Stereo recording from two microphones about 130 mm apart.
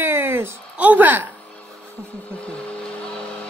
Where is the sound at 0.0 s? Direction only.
15° right (ahead or behind).